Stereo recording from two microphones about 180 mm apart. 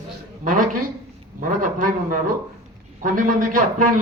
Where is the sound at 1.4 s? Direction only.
50° right (ahead or behind).